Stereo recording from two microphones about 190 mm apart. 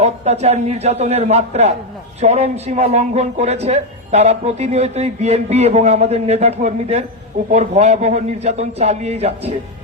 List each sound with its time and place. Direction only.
0.0 s speech: 35° right (ahead or behind)